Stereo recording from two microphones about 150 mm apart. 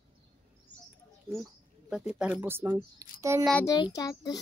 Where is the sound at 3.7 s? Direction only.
25° left (ahead or behind).